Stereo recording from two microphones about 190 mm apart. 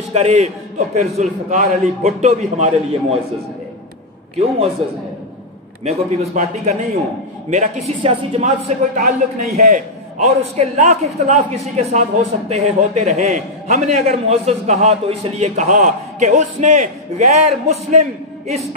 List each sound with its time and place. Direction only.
0.1 s a man's voice: 35° right (ahead or behind)
5.9 s a man's voice: 35° right (ahead or behind)
8.4 s a man's voice: 45° right (ahead or behind)